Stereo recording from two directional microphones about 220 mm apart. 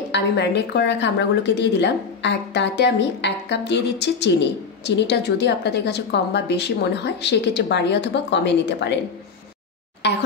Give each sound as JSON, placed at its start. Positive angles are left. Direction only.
{"t": 0.1, "sound": "speech", "side_deg": 50}
{"t": 10.0, "sound": "speech", "side_deg": 50}